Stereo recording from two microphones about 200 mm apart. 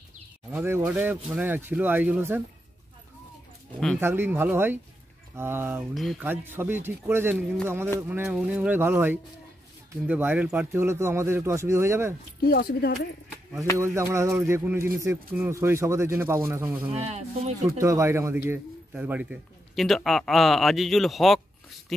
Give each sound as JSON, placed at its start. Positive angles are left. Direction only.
{"t": 0.5, "sound": "a man's voice", "side_deg": -10}
{"t": 4.0, "sound": "a man's voice", "side_deg": -10}
{"t": 12.4, "sound": "speech", "side_deg": 50}
{"t": 13.7, "sound": "a man's voice", "side_deg": -15}
{"t": 16.9, "sound": "speech", "side_deg": -30}
{"t": 17.7, "sound": "a man's voice", "side_deg": -15}